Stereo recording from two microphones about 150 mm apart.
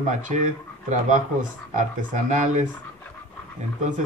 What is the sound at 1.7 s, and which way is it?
Speech, 55° right (ahead or behind).